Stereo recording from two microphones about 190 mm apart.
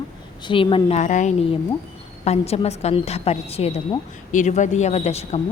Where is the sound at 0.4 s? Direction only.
25° left (ahead or behind).